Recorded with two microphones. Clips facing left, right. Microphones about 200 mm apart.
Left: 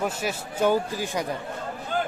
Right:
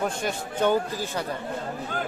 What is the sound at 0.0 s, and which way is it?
Speech, 5° left (ahead or behind).